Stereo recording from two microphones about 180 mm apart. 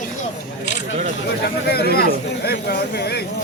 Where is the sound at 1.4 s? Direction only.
60° left (ahead or behind).